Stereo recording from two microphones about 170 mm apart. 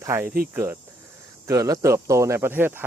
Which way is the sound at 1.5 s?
20° right (ahead or behind).